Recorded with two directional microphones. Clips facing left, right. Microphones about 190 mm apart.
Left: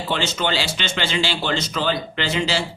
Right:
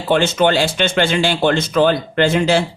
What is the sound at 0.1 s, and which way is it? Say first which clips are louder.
Speech: right 10 dB; 55° right (ahead or behind).